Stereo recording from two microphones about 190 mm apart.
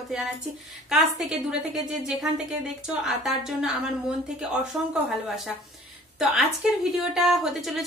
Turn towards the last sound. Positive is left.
turn(degrees=0)  # may be behind; listen again after turning